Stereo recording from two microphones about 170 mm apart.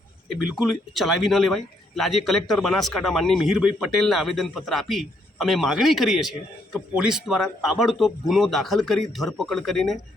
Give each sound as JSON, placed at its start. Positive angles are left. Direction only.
{"t": 0.3, "sound": "speech", "side_deg": -5}